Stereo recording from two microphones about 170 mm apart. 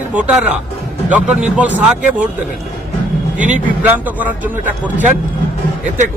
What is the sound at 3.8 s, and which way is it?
Speech, 10° right (ahead or behind).